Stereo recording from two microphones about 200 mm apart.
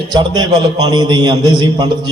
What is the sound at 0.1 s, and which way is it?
A man's voice, 20° right (ahead or behind).